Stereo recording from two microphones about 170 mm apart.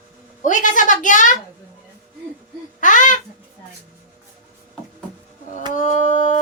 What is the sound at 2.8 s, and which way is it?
Speech, 50° left (ahead or behind).